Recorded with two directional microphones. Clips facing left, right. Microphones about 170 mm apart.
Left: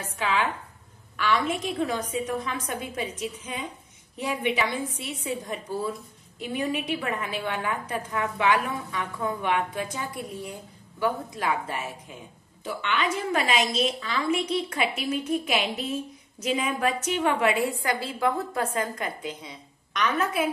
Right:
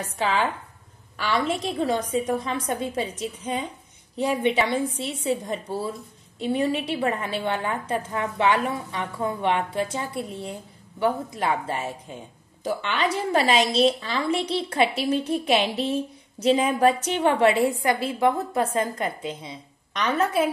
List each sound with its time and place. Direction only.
1.1 s a woman's voice: 35° right (ahead or behind)